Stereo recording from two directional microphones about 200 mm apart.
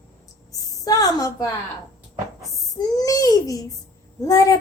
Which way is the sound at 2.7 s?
20° left (ahead or behind).